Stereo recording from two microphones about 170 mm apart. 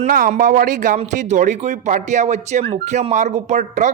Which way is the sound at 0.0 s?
50° right (ahead or behind).